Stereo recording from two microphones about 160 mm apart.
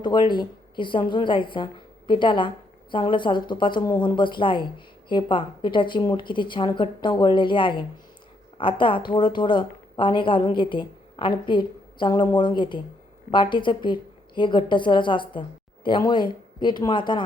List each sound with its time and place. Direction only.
0.0 s a woman's voice: 30° left (ahead or behind)